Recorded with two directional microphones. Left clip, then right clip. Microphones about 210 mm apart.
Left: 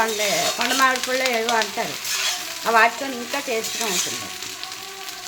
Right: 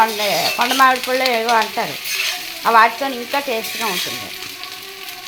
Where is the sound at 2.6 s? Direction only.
Centre (ahead or behind).